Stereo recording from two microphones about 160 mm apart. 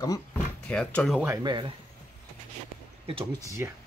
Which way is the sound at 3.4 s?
20° right (ahead or behind).